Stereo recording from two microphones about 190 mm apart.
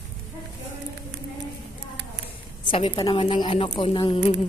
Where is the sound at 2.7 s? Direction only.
25° left (ahead or behind).